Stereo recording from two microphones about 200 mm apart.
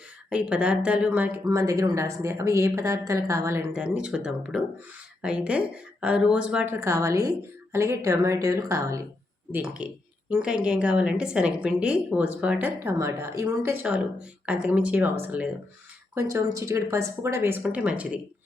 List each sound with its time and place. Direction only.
0.3 s a woman's voice: 5° right (ahead or behind)